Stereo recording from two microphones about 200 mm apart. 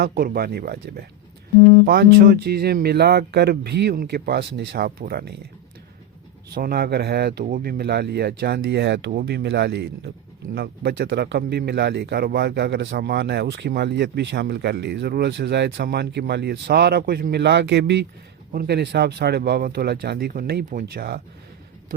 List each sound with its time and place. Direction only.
0.0 s speech: 45° right (ahead or behind)
6.5 s speech: 45° right (ahead or behind)